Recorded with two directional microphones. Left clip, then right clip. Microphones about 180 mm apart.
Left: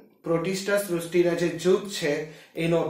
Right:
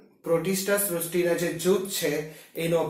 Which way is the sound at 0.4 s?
25° left (ahead or behind).